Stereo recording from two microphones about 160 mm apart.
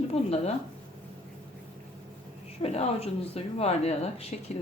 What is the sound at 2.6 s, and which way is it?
Speech, 40° left (ahead or behind).